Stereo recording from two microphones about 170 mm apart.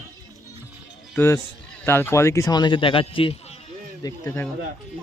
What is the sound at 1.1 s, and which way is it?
Speech, 15° left (ahead or behind).